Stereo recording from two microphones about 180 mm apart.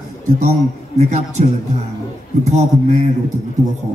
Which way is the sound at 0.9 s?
40° right (ahead or behind).